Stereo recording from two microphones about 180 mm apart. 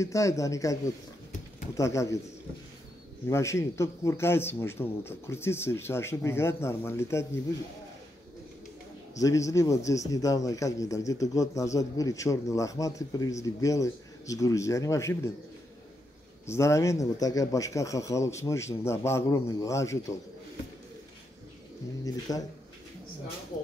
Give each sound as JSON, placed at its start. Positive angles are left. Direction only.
{"t": 0.0, "sound": "a man's voice", "side_deg": 15}
{"t": 1.8, "sound": "a man's voice", "side_deg": 15}
{"t": 3.3, "sound": "a man's voice", "side_deg": 15}
{"t": 9.1, "sound": "a man's voice", "side_deg": 20}
{"t": 16.4, "sound": "a man's voice", "side_deg": 15}
{"t": 22.3, "sound": "speech", "side_deg": 20}